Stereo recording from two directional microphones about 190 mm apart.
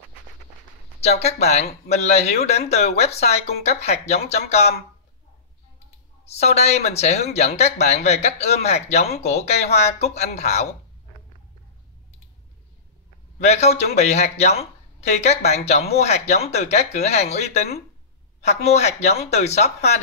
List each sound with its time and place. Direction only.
1.0 s speech: 35° left (ahead or behind)
6.2 s speech: 35° left (ahead or behind)
13.4 s speech: 35° left (ahead or behind)